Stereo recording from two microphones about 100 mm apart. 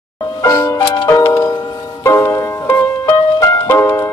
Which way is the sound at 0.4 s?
30° left (ahead or behind).